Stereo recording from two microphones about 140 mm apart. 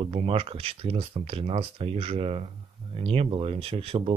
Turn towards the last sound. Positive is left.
turn(degrees=-40)  # may be behind; listen again after turning